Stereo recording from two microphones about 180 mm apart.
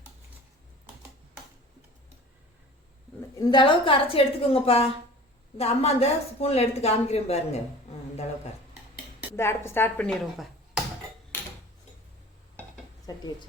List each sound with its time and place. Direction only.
3.3 s speech: 25° left (ahead or behind)
9.3 s a woman's voice: 15° left (ahead or behind)
13.1 s speech: 20° left (ahead or behind)